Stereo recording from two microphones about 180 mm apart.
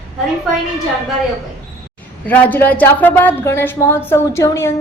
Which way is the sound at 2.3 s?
10° left (ahead or behind).